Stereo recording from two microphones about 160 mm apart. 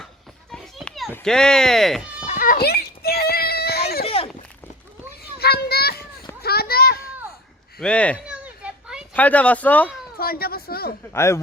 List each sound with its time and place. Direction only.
0.5 s children playing: centre (ahead or behind)
1.1 s speech: 5° left (ahead or behind)
2.2 s children playing: 55° left (ahead or behind)
2.6 s children playing: 85° left
4.0 s a sound: 35° left (ahead or behind)
5.4 s children playing: 80° left
7.8 s speech: 5° left (ahead or behind)
8.3 s a sound: 5° right (ahead or behind)
9.1 s speech: 10° left (ahead or behind)
10.2 s a sound: 70° left (ahead or behind)
11.1 s speech: 15° left (ahead or behind)